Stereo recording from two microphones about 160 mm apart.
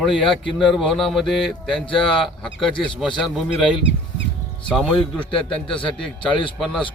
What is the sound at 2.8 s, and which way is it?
Speech, 30° left (ahead or behind).